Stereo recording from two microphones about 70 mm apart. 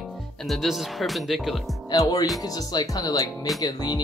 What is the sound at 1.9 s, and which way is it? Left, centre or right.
Speech, left.